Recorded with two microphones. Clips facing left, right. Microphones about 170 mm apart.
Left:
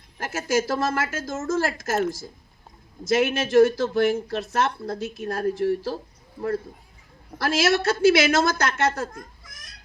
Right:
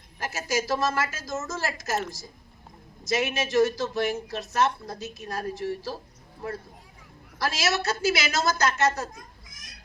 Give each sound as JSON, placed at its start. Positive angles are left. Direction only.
{"t": 0.2, "sound": "speech", "side_deg": 55}
{"t": 7.3, "sound": "speech", "side_deg": 55}